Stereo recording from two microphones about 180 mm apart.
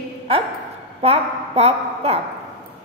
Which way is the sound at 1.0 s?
35° right (ahead or behind).